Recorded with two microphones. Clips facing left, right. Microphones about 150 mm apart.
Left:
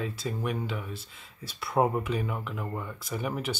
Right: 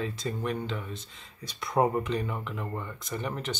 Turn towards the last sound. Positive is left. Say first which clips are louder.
# left 1 dB
turn(degrees=10)  # may be behind; listen again after turning